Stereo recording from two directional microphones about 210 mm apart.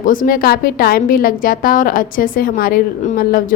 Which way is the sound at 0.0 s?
40° left (ahead or behind).